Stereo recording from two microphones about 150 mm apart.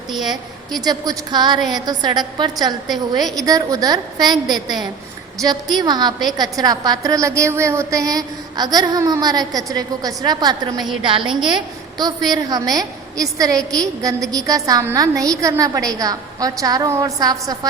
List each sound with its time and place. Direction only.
0.9 s a woman's voice: 25° right (ahead or behind)